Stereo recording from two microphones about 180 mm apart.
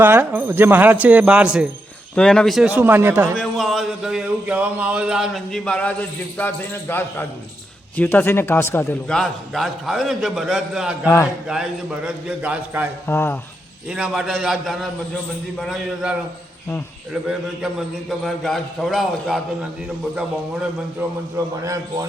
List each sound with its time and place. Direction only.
0.0 s speech: 10° right (ahead or behind)
3.3 s speech: centre (ahead or behind)
13.1 s speech: 10° left (ahead or behind)
13.8 s speech: 5° right (ahead or behind)
21.3 s speech: 20° right (ahead or behind)